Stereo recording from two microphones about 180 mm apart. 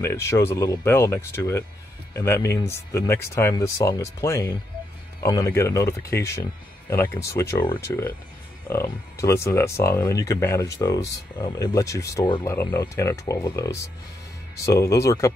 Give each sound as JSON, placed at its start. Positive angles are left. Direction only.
{"t": 0.0, "sound": "speech", "side_deg": 15}